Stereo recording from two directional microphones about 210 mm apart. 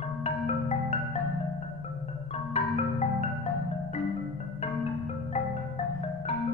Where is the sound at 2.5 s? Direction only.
30° left (ahead or behind).